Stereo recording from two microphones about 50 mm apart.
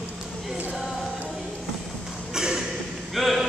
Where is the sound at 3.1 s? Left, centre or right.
Centre.